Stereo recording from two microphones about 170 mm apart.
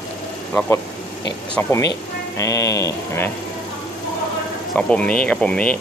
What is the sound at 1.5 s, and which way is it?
Speech, 15° left (ahead or behind).